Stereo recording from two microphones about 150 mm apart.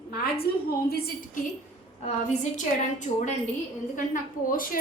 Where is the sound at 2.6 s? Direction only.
55° left (ahead or behind).